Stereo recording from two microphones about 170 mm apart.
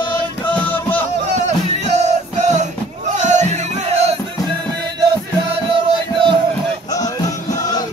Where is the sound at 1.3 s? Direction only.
45° right (ahead or behind).